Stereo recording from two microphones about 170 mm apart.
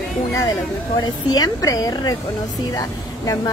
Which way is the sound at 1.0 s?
25° left (ahead or behind).